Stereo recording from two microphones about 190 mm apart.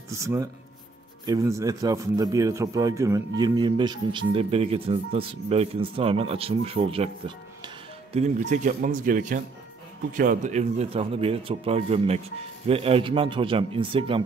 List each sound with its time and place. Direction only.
0.1 s a man's voice: 15° right (ahead or behind)